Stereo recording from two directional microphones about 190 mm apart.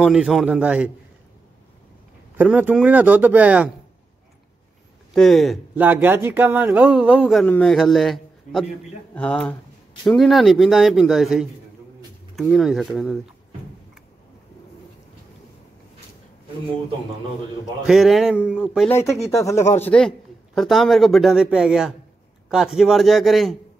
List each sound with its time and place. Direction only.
0.0 s speech: centre (ahead or behind)
2.3 s speech: 10° right (ahead or behind)
5.1 s speech: centre (ahead or behind)
17.8 s speech: centre (ahead or behind)
19.3 s speech: 15° left (ahead or behind); by 23.6 s centre (ahead or behind)